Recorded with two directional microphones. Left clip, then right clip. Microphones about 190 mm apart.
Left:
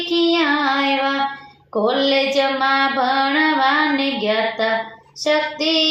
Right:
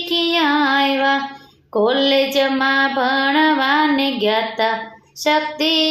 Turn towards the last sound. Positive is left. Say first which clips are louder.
# right 1 dB
turn(degrees=-50)  # may be behind; listen again after turning